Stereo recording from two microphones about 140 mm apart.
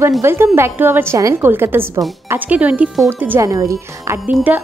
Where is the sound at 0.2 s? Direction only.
15° right (ahead or behind).